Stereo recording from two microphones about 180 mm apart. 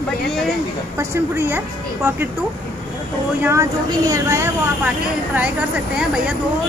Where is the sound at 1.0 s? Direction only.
15° right (ahead or behind).